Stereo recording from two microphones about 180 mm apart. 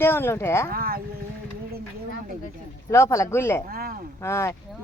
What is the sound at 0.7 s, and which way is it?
Speech, 55° right (ahead or behind).